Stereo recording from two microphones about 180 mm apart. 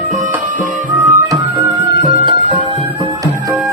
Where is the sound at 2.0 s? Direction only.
25° right (ahead or behind).